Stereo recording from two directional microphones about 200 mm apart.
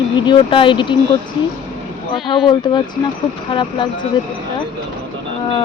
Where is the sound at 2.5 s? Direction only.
20° left (ahead or behind).